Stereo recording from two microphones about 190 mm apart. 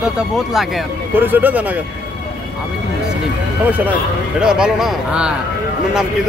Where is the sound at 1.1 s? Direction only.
10° right (ahead or behind).